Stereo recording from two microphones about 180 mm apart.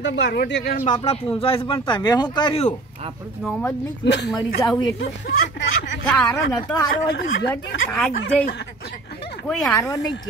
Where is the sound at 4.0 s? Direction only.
70° left (ahead or behind).